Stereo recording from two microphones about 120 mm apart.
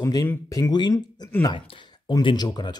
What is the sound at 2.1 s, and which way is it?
Speech, 40° left (ahead or behind).